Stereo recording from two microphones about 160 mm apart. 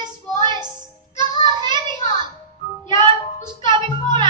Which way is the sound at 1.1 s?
25° right (ahead or behind).